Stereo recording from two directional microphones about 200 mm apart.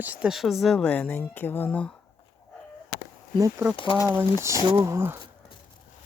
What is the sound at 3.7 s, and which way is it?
Speech, 25° left (ahead or behind).